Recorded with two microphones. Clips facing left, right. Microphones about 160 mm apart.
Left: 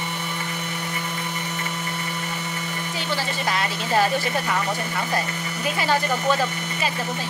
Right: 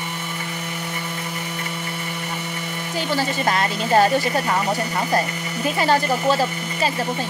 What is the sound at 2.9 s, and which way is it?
Speech, 45° right (ahead or behind).